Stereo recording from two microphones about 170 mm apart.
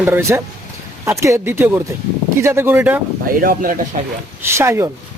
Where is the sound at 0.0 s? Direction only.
15° right (ahead or behind).